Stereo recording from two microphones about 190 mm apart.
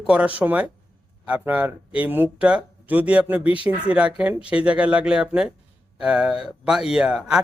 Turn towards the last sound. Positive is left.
turn(degrees=-5)  # may be behind; listen again after turning